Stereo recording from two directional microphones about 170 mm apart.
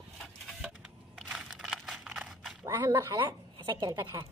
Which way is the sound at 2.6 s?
20° right (ahead or behind).